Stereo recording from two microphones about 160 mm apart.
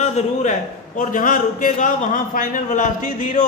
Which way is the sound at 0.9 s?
60° left (ahead or behind).